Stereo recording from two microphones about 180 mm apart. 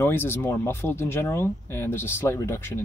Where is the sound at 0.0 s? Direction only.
10° left (ahead or behind).